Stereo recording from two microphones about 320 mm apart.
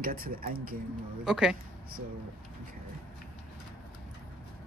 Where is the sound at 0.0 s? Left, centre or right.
Right.